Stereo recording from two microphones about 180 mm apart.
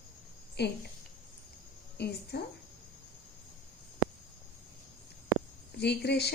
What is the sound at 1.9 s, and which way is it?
Speech, 65° left (ahead or behind).